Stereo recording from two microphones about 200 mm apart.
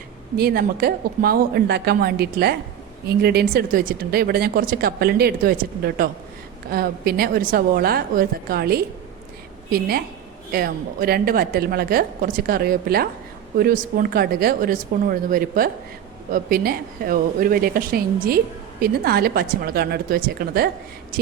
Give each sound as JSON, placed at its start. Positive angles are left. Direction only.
{"t": 0.3, "sound": "a woman's voice", "side_deg": -50}